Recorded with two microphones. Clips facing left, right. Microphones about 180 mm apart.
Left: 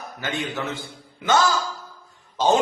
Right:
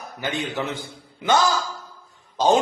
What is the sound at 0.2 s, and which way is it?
Speech, 15° right (ahead or behind).